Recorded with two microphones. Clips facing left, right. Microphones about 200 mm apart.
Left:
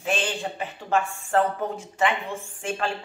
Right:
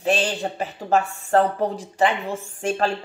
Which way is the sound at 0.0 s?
40° right (ahead or behind).